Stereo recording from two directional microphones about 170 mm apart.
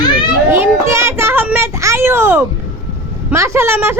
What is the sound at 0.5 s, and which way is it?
Child singing, 15° right (ahead or behind).